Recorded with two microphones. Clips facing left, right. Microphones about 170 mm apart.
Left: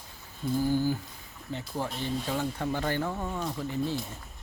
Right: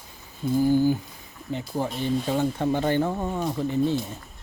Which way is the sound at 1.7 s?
20° right (ahead or behind).